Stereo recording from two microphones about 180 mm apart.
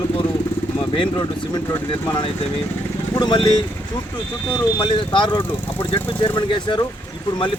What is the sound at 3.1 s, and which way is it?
Speech, 25° left (ahead or behind).